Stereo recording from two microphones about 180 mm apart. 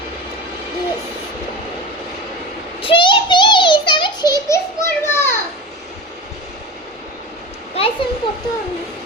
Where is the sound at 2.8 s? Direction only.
25° left (ahead or behind).